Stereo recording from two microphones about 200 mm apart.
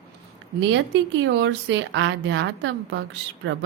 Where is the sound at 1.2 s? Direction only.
65° right (ahead or behind).